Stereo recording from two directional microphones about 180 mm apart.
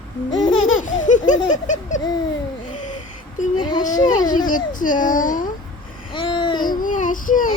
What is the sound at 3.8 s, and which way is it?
A child's voice, 45° left (ahead or behind).